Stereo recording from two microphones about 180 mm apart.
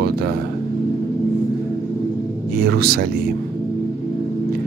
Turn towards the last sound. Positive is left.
turn(degrees=-60)  # may be behind; listen again after turning